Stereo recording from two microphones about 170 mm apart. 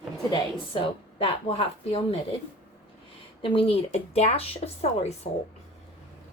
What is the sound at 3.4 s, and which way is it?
A woman's voice, 30° left (ahead or behind).